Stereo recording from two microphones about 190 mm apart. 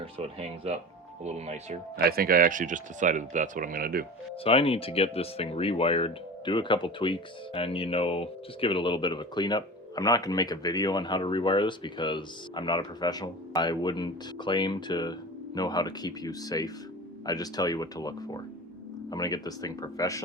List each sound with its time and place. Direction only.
0.0 s speech: 30° right (ahead or behind)
2.0 s speech: 55° right (ahead or behind)
4.4 s speech: 30° left (ahead or behind)